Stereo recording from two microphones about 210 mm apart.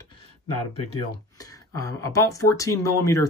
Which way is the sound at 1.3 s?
15° left (ahead or behind).